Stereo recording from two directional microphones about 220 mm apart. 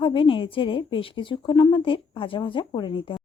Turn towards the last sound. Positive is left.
turn(degrees=20)  # may be behind; listen again after turning